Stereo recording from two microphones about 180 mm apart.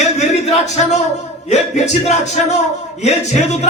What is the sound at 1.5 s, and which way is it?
Speech, 40° left (ahead or behind).